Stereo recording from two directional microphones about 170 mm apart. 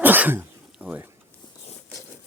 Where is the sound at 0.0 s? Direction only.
10° right (ahead or behind).